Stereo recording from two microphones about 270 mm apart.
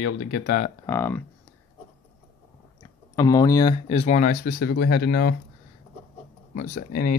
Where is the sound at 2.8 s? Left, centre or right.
Centre; by 5.4 s left.